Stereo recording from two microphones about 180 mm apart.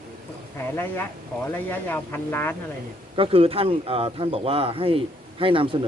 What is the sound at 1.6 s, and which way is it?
Speech, 10° left (ahead or behind).